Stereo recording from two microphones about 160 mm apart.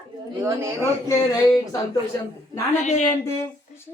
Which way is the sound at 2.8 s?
50° left (ahead or behind).